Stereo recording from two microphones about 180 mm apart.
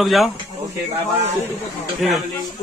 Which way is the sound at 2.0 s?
Centre (ahead or behind).